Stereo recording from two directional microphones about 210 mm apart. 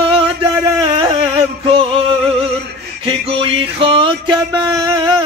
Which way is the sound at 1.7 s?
25° right (ahead or behind).